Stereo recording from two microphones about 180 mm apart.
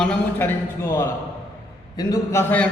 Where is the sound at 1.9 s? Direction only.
15° left (ahead or behind).